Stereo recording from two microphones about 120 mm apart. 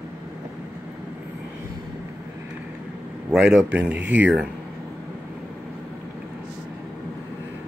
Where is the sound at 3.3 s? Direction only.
5° right (ahead or behind).